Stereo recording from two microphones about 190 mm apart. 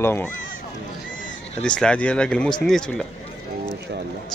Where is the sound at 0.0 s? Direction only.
10° left (ahead or behind).